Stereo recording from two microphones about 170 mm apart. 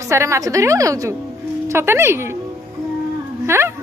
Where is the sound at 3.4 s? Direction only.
15° right (ahead or behind).